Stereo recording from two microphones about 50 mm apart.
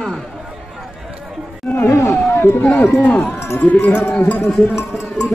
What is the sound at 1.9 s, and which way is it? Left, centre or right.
Speech, left.